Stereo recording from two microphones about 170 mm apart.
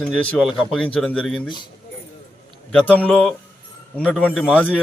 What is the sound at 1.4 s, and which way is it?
Speech, 25° left (ahead or behind).